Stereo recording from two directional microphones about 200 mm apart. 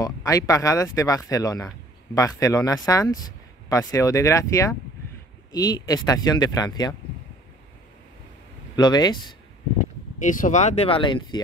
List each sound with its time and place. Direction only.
0.0 s speech: 15° left (ahead or behind)
8.7 s speech: 20° left (ahead or behind)
10.1 s speech: 40° left (ahead or behind); by 11.4 s 20° left (ahead or behind)